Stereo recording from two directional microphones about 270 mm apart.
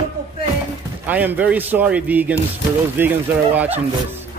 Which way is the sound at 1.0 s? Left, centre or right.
Centre.